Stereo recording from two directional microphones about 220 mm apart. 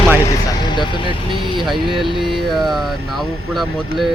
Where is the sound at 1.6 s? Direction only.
Centre (ahead or behind).